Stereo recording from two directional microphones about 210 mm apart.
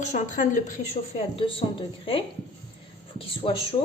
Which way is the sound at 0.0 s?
35° left (ahead or behind).